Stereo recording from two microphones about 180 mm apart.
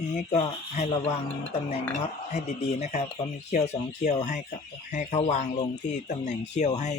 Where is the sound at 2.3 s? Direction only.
35° left (ahead or behind).